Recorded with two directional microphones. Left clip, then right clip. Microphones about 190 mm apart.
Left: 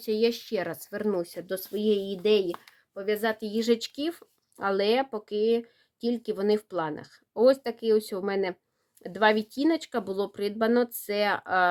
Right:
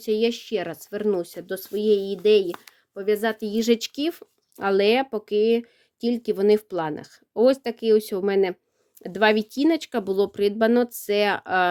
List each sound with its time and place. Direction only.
0.0 s speech: 40° right (ahead or behind)
2.5 s speech: 40° right (ahead or behind)